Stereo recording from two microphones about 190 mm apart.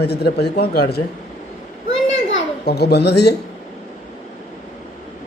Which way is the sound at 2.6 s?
60° left (ahead or behind).